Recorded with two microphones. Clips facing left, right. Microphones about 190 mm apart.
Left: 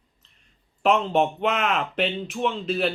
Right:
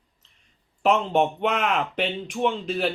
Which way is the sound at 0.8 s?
5° right (ahead or behind).